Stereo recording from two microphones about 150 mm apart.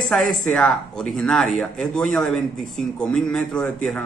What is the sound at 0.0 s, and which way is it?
Speech, centre (ahead or behind).